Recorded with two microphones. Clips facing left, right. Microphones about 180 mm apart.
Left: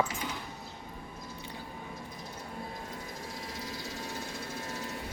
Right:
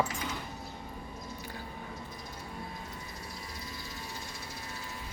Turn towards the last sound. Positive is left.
turn(degrees=90)